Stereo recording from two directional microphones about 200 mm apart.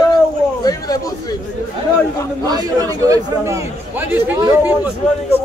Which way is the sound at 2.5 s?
20° right (ahead or behind).